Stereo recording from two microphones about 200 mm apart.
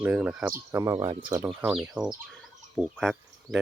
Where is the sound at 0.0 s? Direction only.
5° right (ahead or behind).